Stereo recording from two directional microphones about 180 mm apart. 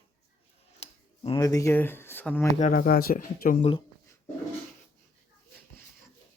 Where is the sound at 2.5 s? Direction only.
45° left (ahead or behind).